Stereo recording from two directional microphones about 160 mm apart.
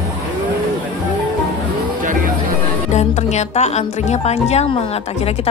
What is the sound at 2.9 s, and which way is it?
Speech, 45° left (ahead or behind).